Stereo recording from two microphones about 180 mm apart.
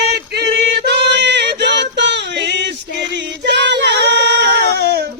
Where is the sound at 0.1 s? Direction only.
65° right (ahead or behind).